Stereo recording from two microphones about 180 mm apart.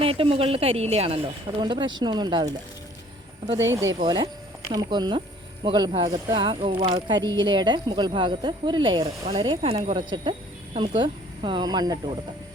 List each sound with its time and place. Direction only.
0.0 s a woman's voice: 30° right (ahead or behind)
3.7 s speech: 20° right (ahead or behind)